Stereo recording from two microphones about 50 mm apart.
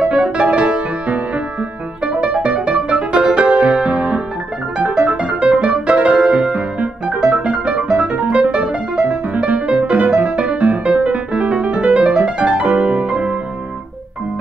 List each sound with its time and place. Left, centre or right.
0.2 s music: right